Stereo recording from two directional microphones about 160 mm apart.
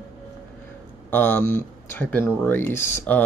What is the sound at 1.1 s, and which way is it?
Speech, 10° left (ahead or behind).